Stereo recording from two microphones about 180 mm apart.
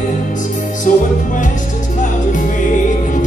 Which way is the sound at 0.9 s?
45° left (ahead or behind).